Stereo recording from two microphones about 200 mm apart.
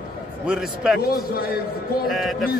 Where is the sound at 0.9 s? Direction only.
50° left (ahead or behind).